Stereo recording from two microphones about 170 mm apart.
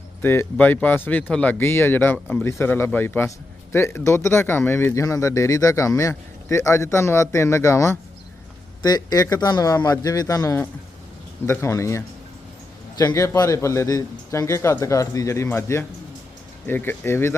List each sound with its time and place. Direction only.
0.2 s a man's voice: 10° left (ahead or behind)